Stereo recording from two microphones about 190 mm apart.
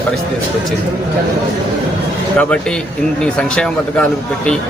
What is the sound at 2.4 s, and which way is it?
A man's voice, 5° left (ahead or behind).